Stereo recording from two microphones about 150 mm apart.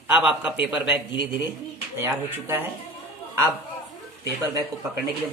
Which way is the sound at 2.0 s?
15° right (ahead or behind).